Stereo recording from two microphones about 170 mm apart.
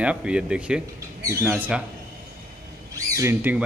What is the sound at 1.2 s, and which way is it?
Speech, 15° right (ahead or behind).